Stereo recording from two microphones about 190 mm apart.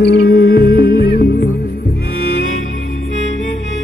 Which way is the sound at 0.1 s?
55° left (ahead or behind).